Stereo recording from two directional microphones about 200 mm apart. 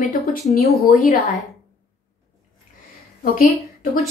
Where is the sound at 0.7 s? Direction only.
50° left (ahead or behind).